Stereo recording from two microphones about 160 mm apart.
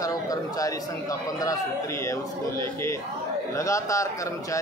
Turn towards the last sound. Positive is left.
turn(degrees=20)  # may be behind; listen again after turning